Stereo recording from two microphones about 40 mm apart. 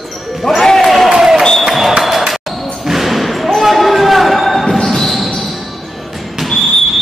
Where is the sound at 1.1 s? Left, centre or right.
Centre.